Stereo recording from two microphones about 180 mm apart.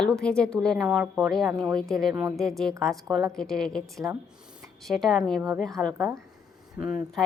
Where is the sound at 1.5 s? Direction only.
20° right (ahead or behind).